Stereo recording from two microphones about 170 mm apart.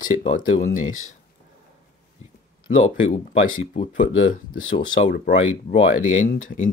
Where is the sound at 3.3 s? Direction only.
40° left (ahead or behind).